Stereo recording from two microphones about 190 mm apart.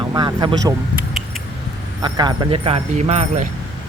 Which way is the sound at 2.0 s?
20° right (ahead or behind).